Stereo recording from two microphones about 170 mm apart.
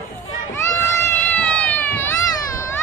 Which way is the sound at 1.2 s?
5° left (ahead or behind).